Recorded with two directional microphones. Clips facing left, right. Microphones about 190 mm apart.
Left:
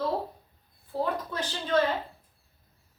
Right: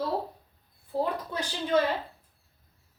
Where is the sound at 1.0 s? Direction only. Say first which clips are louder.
Left 1 dB; 10° right (ahead or behind).